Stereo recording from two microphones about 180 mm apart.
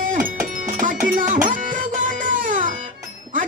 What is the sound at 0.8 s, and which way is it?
Music, 45° right (ahead or behind).